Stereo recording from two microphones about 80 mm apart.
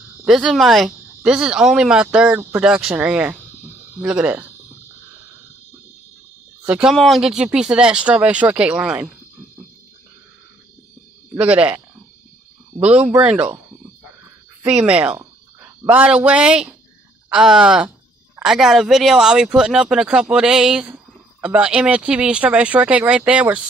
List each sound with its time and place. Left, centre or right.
0.2 s speech: centre
6.6 s speech: centre
6.9 s speech: centre
11.3 s speech: centre
14.7 s speech: centre
15.1 s a sound: right
16.0 s speech: centre